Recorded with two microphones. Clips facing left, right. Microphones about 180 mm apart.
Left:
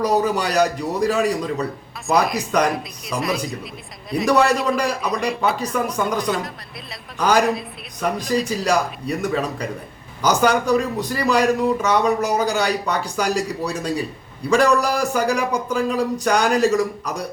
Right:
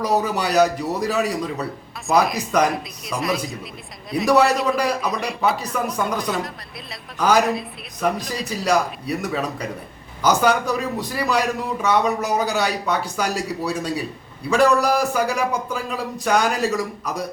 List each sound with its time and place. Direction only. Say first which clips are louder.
0.0 s a man's voice: left 2 dB; 5° right (ahead or behind)